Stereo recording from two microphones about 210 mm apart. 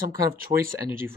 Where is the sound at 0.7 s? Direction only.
10° right (ahead or behind).